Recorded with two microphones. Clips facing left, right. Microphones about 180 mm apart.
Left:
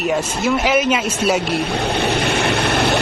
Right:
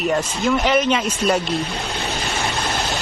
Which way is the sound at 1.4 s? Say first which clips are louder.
Left 4 dB; 65° left (ahead or behind).